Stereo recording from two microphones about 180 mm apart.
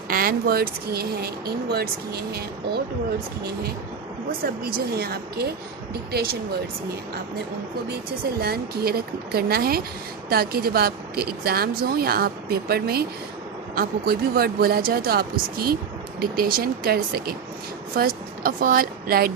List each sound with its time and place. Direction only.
0.1 s a woman's voice: 55° right (ahead or behind)
4.3 s a woman's voice: 55° right (ahead or behind)
8.4 s a woman's voice: 60° right (ahead or behind)